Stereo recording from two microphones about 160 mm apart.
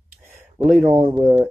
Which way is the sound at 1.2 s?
15° right (ahead or behind).